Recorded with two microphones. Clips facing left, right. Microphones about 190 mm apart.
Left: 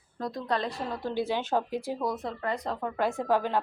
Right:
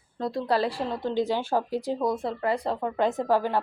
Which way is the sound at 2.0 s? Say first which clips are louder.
Right 5 dB; 25° right (ahead or behind).